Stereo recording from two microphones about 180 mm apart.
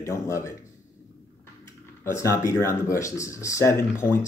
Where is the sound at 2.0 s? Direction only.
15° left (ahead or behind).